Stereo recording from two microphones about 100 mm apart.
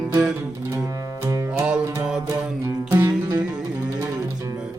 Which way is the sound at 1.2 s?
30° right (ahead or behind).